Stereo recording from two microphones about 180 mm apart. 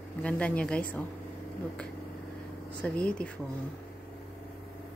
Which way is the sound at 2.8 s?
5° left (ahead or behind).